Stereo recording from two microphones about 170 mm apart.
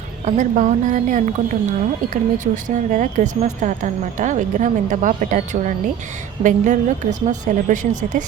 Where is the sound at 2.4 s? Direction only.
50° right (ahead or behind).